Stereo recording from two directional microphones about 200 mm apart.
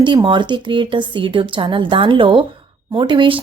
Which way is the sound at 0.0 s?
25° right (ahead or behind).